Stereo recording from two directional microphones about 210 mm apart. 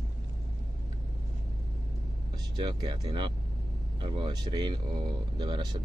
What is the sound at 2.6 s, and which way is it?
Speech, 20° right (ahead or behind).